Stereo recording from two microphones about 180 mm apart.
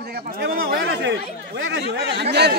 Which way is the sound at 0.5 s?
75° right (ahead or behind).